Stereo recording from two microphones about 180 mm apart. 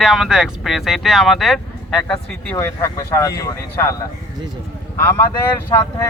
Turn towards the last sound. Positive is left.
turn(degrees=15)  # may be behind; listen again after turning